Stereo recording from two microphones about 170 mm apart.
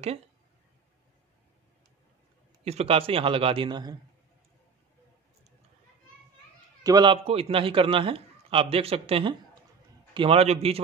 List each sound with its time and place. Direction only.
2.6 s a man's voice: 35° right (ahead or behind)
6.8 s a man's voice: 25° right (ahead or behind)